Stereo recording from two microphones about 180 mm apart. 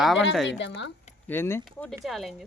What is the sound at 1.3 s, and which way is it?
Speech, 15° left (ahead or behind).